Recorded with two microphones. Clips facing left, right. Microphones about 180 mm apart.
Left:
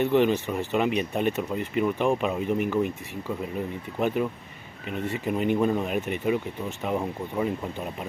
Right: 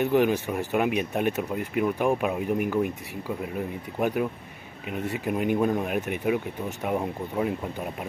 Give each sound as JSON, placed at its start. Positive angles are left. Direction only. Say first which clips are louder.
{"t": 0.0, "sound": "speech", "louder": "even", "side_deg": -10}